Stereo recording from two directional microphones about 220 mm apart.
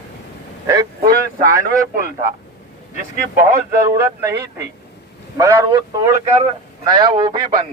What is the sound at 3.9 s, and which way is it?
A man's voice, 10° right (ahead or behind).